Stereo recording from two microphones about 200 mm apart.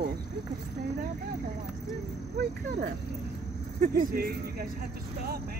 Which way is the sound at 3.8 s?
40° right (ahead or behind).